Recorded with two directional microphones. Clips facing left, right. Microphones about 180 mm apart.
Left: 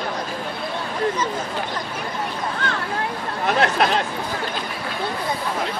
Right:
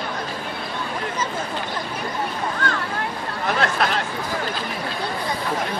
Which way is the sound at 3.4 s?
20° left (ahead or behind).